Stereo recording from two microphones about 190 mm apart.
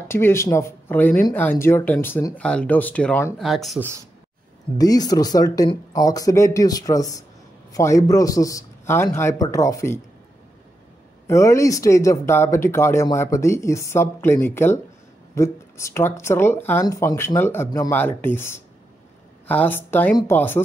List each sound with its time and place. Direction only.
0.1 s speech: 15° left (ahead or behind)
4.7 s speech: 20° left (ahead or behind)
11.2 s speech: 15° left (ahead or behind)